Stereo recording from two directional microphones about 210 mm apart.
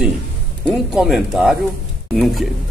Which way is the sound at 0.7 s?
Centre (ahead or behind).